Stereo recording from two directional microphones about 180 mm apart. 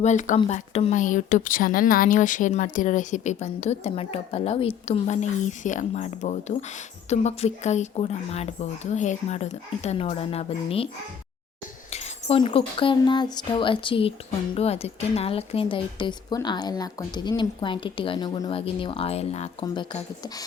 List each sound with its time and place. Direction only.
0.0 s a woman's voice: 40° left (ahead or behind)
11.9 s a sound: 35° left (ahead or behind)
12.4 s speech: 30° left (ahead or behind)
19.6 s speech: 25° left (ahead or behind)